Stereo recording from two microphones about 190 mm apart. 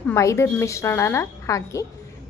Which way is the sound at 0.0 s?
15° left (ahead or behind).